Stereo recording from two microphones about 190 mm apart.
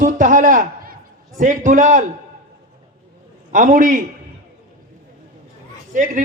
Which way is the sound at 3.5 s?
45° right (ahead or behind).